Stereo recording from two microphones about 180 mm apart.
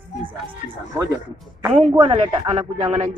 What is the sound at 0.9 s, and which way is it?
Speech, 15° right (ahead or behind).